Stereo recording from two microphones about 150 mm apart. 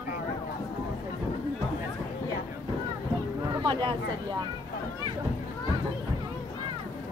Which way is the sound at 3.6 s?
30° right (ahead or behind).